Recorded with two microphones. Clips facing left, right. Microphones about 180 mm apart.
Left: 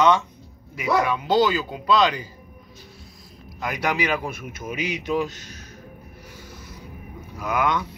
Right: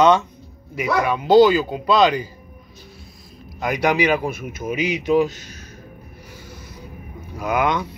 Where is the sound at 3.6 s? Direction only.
15° right (ahead or behind).